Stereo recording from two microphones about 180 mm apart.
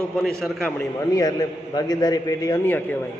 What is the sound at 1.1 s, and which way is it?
A man's voice, 20° left (ahead or behind).